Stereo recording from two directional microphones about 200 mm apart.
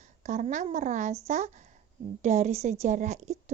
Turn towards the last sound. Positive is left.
turn(degrees=-35)  # may be behind; listen again after turning